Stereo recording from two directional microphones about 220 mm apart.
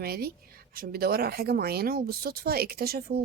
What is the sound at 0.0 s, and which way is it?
A woman's voice, 45° right (ahead or behind).